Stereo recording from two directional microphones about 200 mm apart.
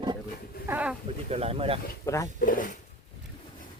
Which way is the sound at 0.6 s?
5° right (ahead or behind).